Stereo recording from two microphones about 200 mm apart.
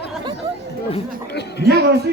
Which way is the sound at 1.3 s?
55° left (ahead or behind).